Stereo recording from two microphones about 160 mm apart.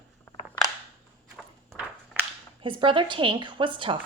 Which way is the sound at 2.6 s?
30° right (ahead or behind).